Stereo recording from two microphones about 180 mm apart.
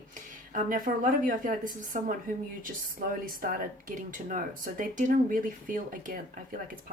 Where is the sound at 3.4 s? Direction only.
50° right (ahead or behind).